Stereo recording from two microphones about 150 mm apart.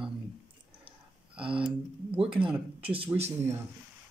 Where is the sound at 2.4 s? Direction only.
10° right (ahead or behind).